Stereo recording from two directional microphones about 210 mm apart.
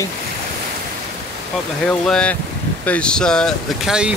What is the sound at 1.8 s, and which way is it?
Speech, 5° left (ahead or behind).